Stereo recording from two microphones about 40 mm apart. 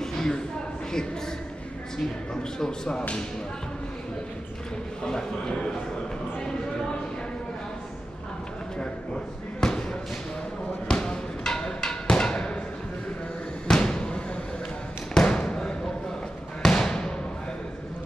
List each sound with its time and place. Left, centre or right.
0.0 s a sound: centre
2.6 s speech: centre
5.0 s a man's voice: centre
8.7 s speech: left
10.9 s music: centre
12.2 s thump: left
13.7 s a sound: centre
15.1 s basketball bounce: centre